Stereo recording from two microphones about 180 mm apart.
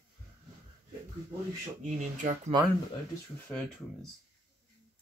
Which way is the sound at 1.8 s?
45° right (ahead or behind).